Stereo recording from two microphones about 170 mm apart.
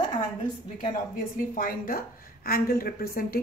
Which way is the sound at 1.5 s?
55° left (ahead or behind).